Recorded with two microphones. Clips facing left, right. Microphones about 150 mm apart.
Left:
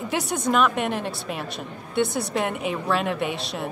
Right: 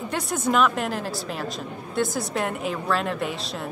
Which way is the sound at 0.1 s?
Centre (ahead or behind).